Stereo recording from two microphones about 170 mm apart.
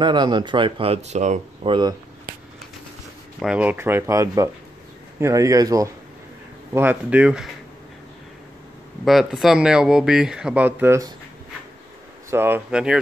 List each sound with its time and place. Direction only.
0.0 s speech: 25° right (ahead or behind); by 1.7 s 40° right (ahead or behind)
1.7 s speech: 25° right (ahead or behind)
3.3 s speech: 5° right (ahead or behind)
6.7 s speech: 10° right (ahead or behind)
9.0 s speech: centre (ahead or behind)
12.3 s speech: 15° right (ahead or behind)